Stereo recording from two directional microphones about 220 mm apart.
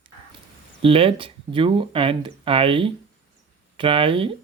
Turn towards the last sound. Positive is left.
turn(degrees=-25)  # may be behind; listen again after turning